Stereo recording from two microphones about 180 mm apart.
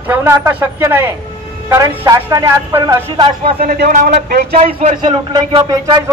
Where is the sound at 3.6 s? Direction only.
55° right (ahead or behind).